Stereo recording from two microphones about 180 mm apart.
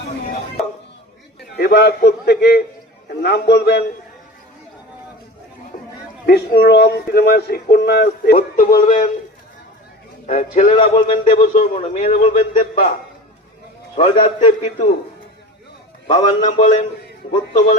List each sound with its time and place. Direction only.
1.5 s a man's voice: 65° left (ahead or behind)
6.2 s speech: 60° left (ahead or behind)
10.2 s a man's voice: 45° left (ahead or behind)
13.9 s a man's voice: 40° left (ahead or behind)
16.0 s a man's voice: 40° left (ahead or behind)